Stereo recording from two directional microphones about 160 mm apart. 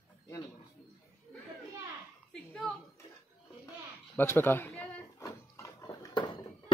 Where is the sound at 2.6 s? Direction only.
Centre (ahead or behind).